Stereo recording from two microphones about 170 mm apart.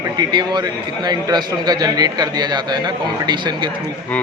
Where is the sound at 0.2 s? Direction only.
25° right (ahead or behind).